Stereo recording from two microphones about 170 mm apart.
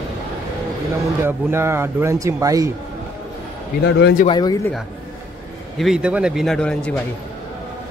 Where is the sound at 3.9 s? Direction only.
90° left.